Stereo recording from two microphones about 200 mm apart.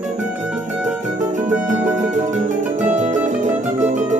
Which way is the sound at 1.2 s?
40° right (ahead or behind).